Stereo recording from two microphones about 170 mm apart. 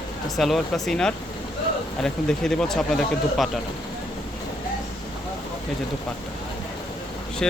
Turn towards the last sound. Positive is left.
turn(degrees=5)  # may be behind; listen again after turning